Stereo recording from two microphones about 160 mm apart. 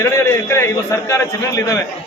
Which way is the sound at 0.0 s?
15° left (ahead or behind).